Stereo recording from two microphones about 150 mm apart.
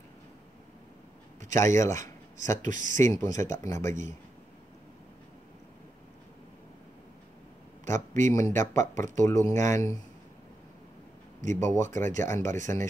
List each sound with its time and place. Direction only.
1.5 s speech: 20° left (ahead or behind)
2.6 s speech: 60° right (ahead or behind)
3.0 s speech: 20° left (ahead or behind)
8.1 s speech: 55° right (ahead or behind)
8.4 s speech: 20° left (ahead or behind)
11.4 s speech: 55° right (ahead or behind)
12.2 s speech: 20° left (ahead or behind)